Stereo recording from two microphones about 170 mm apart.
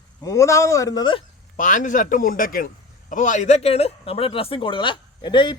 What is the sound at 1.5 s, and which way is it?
A man's voice, 50° left (ahead or behind).